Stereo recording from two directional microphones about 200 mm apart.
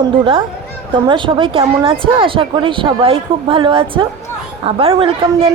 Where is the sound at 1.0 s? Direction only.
25° right (ahead or behind).